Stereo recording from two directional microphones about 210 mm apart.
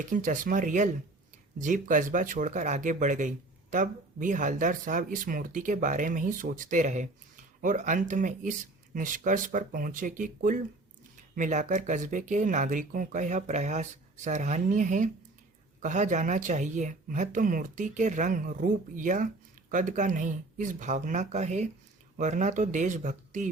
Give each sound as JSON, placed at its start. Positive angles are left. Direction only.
{"t": 0.0, "sound": "speech", "side_deg": -40}